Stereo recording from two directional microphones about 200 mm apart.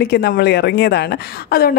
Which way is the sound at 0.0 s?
50° left (ahead or behind).